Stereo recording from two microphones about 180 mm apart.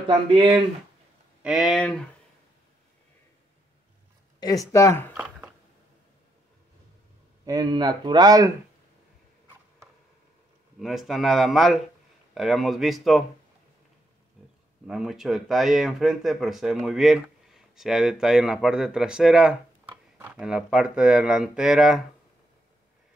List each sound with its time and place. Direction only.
0.1 s speech: 25° right (ahead or behind)
1.4 s speech: centre (ahead or behind)
4.7 s speech: 15° left (ahead or behind)
5.1 s a sound: 5° right (ahead or behind)
7.4 s speech: 20° right (ahead or behind)
10.8 s speech: centre (ahead or behind)
14.9 s speech: centre (ahead or behind)